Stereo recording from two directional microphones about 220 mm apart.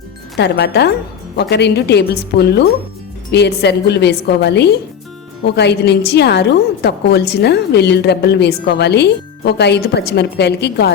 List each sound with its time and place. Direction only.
0.3 s a woman's voice: 50° left (ahead or behind)